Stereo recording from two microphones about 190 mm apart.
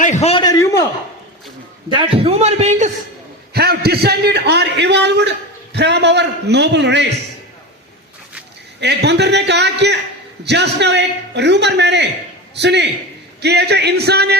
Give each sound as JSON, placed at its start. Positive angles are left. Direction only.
{"t": 0.0, "sound": "a man's voice", "side_deg": 35}
{"t": 0.4, "sound": "a sound", "side_deg": 15}
{"t": 2.0, "sound": "speech", "side_deg": -30}
{"t": 3.5, "sound": "a man's voice", "side_deg": -55}
{"t": 8.8, "sound": "a man's voice", "side_deg": -65}